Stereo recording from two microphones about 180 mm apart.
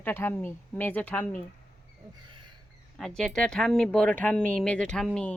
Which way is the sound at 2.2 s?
25° right (ahead or behind).